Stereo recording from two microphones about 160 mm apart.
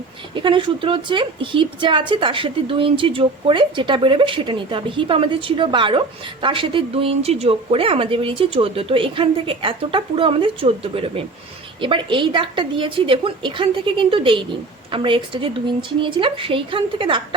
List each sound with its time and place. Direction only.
0.3 s speech: 30° right (ahead or behind)